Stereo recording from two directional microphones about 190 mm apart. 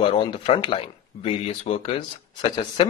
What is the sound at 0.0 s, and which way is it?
A man's voice, 25° left (ahead or behind).